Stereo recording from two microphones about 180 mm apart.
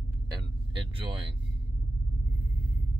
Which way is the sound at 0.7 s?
30° right (ahead or behind).